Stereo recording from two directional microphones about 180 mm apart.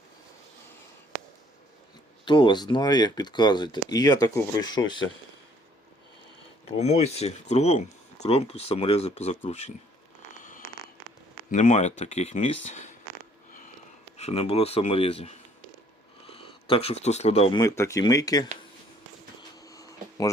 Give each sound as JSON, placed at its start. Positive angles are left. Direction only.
{"t": 2.2, "sound": "speech", "side_deg": 25}
{"t": 6.7, "sound": "speech", "side_deg": 35}
{"t": 11.5, "sound": "speech", "side_deg": 40}
{"t": 14.2, "sound": "speech", "side_deg": 35}
{"t": 17.6, "sound": "speech", "side_deg": 15}
{"t": 19.5, "sound": "a sound", "side_deg": 20}